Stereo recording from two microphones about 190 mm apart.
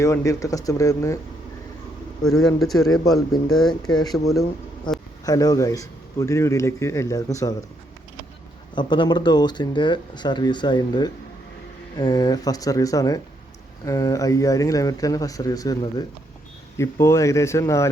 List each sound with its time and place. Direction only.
0.0 s a man's voice: 15° left (ahead or behind)
2.2 s speech: centre (ahead or behind)
3.9 s speech: 20° left (ahead or behind)
5.2 s a man's voice: 20° left (ahead or behind)
8.7 s a man's voice: 25° left (ahead or behind)